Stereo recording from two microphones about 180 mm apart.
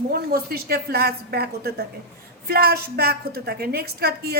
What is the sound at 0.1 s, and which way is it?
A woman's voice, 60° right (ahead or behind).